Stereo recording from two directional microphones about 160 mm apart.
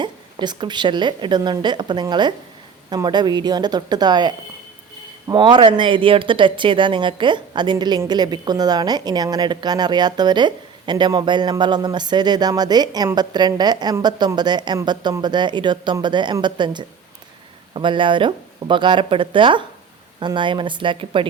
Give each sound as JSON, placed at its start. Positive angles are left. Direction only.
{"t": 0.0, "sound": "speech", "side_deg": -30}